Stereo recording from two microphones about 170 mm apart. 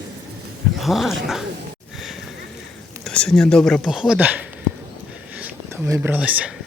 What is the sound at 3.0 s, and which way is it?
Speech, 5° left (ahead or behind).